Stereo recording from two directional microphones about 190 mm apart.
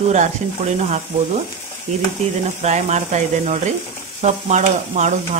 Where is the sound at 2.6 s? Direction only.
35° right (ahead or behind).